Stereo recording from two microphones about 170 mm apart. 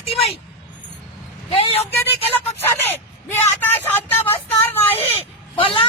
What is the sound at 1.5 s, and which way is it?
Speech, 35° left (ahead or behind).